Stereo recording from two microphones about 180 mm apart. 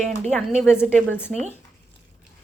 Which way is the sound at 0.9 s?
10° left (ahead or behind).